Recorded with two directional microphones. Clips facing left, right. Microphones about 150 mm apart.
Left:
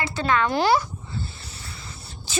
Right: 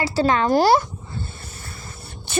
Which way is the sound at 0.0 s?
35° right (ahead or behind).